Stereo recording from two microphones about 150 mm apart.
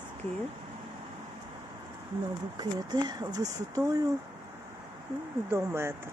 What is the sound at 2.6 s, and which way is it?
Speech, 25° right (ahead or behind).